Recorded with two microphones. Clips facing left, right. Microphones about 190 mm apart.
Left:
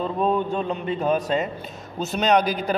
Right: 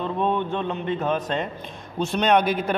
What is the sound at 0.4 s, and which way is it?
Speech, 35° left (ahead or behind).